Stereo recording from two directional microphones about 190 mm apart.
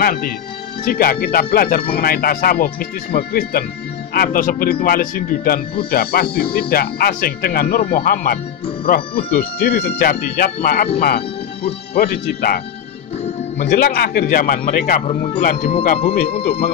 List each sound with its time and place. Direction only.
0.0 s speech: 50° left (ahead or behind)
15.0 s speech: 30° left (ahead or behind)